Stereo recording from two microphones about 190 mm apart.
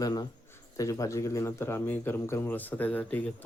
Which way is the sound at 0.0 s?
20° left (ahead or behind).